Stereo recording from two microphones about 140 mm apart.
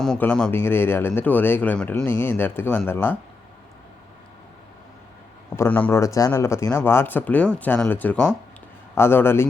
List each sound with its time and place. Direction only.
0.0 s speech: 5° left (ahead or behind)
5.5 s speech: 10° left (ahead or behind)